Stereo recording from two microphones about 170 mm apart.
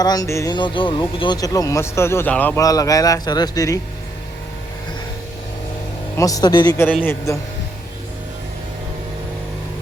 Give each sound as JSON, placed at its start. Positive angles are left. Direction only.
{"t": 0.0, "sound": "speech", "side_deg": 20}
{"t": 2.6, "sound": "speech", "side_deg": 20}
{"t": 6.1, "sound": "speech", "side_deg": 20}
{"t": 6.8, "sound": "a man's voice", "side_deg": 10}